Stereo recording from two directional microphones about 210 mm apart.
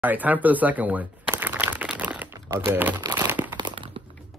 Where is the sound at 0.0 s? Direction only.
10° right (ahead or behind).